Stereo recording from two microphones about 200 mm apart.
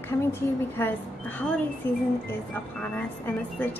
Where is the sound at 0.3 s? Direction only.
10° left (ahead or behind).